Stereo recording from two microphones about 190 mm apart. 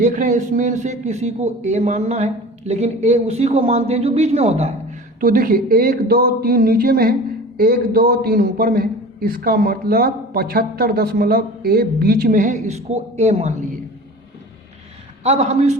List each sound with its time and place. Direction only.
0.0 s a man's voice: 40° right (ahead or behind)
5.2 s speech: 50° right (ahead or behind)
15.2 s a man's voice: 35° right (ahead or behind)